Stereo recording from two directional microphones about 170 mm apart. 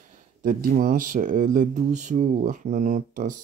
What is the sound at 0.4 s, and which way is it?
Speech, 55° right (ahead or behind).